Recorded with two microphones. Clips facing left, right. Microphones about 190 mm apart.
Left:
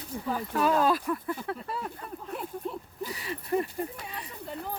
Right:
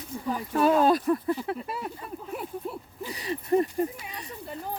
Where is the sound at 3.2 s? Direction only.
30° right (ahead or behind).